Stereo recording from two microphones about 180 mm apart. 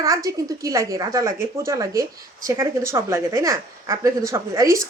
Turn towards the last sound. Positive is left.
turn(degrees=-15)  # may be behind; listen again after turning